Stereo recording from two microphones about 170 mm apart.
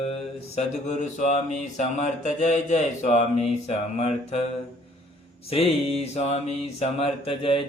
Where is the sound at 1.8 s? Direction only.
45° left (ahead or behind).